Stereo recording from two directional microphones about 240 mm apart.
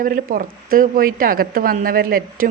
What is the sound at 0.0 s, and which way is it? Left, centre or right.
Speech, right.